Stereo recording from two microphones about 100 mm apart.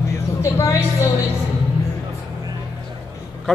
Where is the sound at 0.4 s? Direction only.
30° left (ahead or behind).